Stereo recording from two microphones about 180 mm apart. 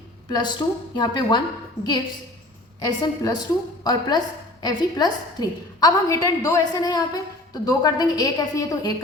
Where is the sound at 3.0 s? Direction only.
20° left (ahead or behind).